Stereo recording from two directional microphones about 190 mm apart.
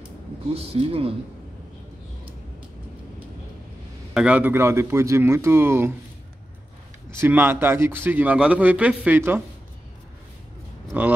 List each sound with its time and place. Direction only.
0.6 s a woman's voice: 30° right (ahead or behind)
4.1 s a man's voice: 5° right (ahead or behind)
7.1 s a man's voice: 10° right (ahead or behind)
10.9 s speech: 10° right (ahead or behind)